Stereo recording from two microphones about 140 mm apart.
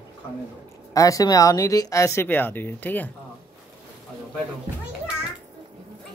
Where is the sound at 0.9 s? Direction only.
25° left (ahead or behind).